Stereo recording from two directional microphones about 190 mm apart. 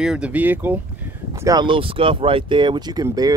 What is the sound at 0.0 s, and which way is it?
Speech, 5° right (ahead or behind).